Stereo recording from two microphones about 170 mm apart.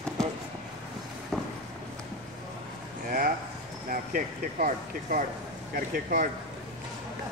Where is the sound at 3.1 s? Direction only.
55° right (ahead or behind).